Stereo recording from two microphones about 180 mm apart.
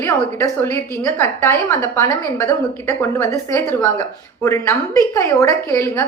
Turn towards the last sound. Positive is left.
turn(degrees=15)  # may be behind; listen again after turning